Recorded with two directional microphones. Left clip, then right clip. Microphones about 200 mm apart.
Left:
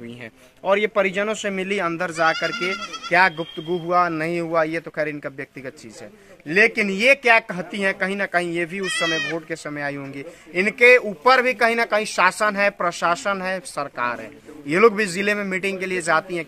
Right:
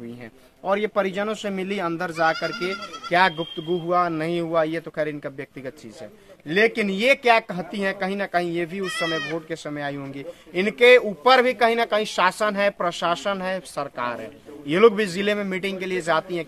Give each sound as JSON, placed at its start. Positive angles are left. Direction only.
{"t": 0.7, "sound": "speech", "side_deg": 30}
{"t": 2.5, "sound": "speech", "side_deg": 40}
{"t": 3.1, "sound": "a man's voice", "side_deg": 0}